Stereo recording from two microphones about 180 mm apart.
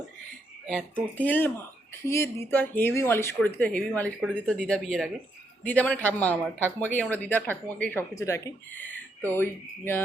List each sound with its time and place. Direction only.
0.7 s speech: 10° right (ahead or behind)
1.1 s speech: 10° left (ahead or behind)